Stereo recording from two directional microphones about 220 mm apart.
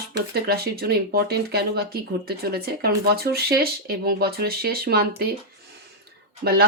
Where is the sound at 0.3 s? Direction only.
45° right (ahead or behind).